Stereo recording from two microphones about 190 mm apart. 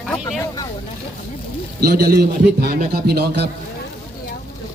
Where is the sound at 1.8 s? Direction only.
55° right (ahead or behind).